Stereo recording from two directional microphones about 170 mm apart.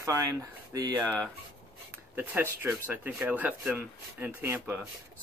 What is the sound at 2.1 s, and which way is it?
Speech, 10° right (ahead or behind).